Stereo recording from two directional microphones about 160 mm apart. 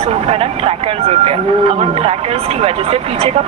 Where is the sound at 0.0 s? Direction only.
40° right (ahead or behind).